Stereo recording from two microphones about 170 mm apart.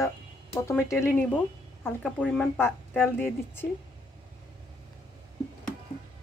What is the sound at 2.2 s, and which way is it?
Speech, 5° left (ahead or behind).